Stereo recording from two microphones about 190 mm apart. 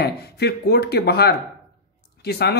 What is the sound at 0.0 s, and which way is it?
Speech, 60° left (ahead or behind).